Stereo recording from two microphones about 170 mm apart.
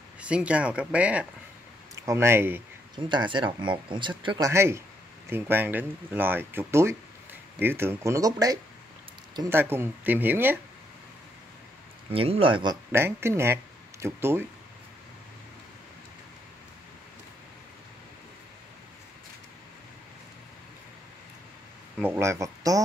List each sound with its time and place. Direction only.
0.2 s speech: 5° right (ahead or behind)
3.0 s speech: 25° right (ahead or behind)
4.5 s speech: 15° right (ahead or behind)
12.1 s speech: 35° right (ahead or behind)
12.9 s speech: 15° right (ahead or behind)
22.0 s speech: 15° right (ahead or behind)